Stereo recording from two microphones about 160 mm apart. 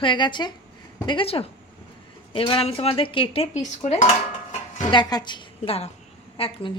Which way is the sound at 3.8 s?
45° left (ahead or behind).